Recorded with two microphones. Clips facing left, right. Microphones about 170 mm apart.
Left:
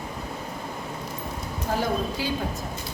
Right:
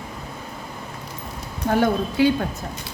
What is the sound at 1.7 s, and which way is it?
Speech, 65° right (ahead or behind).